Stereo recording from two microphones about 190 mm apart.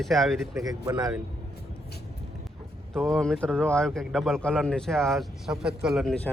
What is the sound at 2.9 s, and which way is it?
A man's voice, 5° left (ahead or behind).